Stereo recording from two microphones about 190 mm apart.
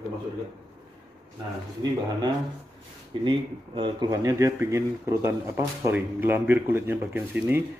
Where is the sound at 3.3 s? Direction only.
25° right (ahead or behind).